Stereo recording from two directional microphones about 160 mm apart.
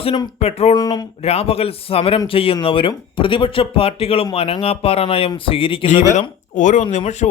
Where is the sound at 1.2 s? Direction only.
40° left (ahead or behind).